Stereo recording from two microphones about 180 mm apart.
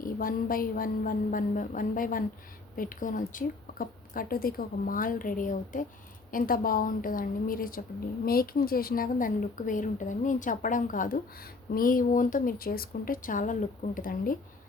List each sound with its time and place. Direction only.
0.0 s a woman's voice: 50° left (ahead or behind)